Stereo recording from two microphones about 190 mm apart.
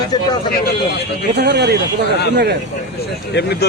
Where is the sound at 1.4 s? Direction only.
65° right (ahead or behind).